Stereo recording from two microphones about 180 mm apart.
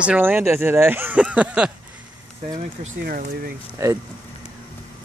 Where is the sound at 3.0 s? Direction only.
50° right (ahead or behind).